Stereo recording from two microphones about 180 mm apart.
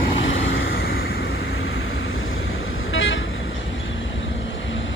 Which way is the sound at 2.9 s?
90° left.